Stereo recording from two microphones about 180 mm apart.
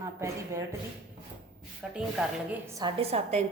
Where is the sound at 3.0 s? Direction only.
35° right (ahead or behind).